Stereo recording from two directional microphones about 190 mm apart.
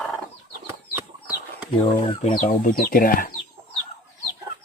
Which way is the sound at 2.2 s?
40° left (ahead or behind).